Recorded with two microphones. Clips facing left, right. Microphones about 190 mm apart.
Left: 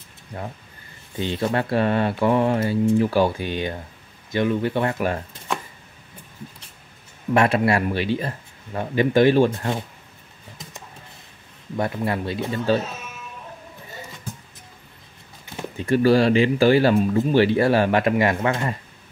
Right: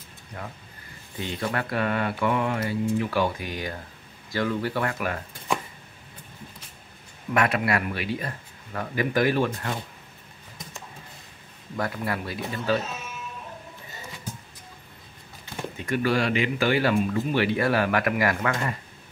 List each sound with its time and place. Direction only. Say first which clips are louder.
1.2 s speech: left 6 dB; 30° left (ahead or behind)
7.3 s speech: left 5 dB; 30° left (ahead or behind)
11.7 s speech: left 5 dB; 25° left (ahead or behind)
15.8 s speech: left 8 dB; 30° left (ahead or behind)